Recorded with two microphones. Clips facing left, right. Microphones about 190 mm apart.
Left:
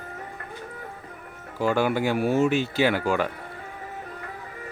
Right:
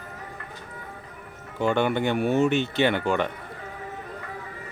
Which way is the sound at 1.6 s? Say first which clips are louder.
Even; 5° left (ahead or behind).